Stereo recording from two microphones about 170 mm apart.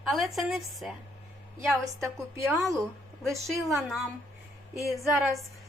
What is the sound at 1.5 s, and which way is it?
Speech, 15° right (ahead or behind).